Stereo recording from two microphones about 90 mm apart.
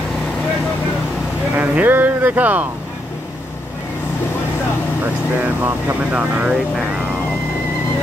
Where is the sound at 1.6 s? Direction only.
20° right (ahead or behind).